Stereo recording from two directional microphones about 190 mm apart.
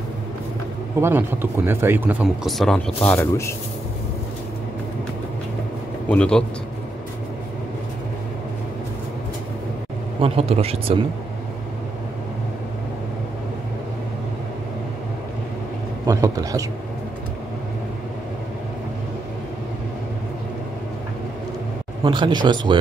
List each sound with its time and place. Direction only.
1.0 s speech: 10° right (ahead or behind)
3.1 s speech: 15° left (ahead or behind)
6.0 s speech: 5° left (ahead or behind)
10.2 s speech: 30° right (ahead or behind)
16.1 s speech: 15° right (ahead or behind)
22.0 s speech: 25° right (ahead or behind)